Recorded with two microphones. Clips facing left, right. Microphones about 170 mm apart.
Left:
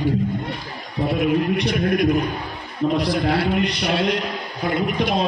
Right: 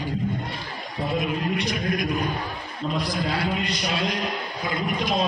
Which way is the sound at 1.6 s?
65° left (ahead or behind).